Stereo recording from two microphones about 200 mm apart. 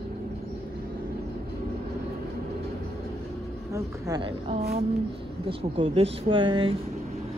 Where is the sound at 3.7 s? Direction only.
20° right (ahead or behind).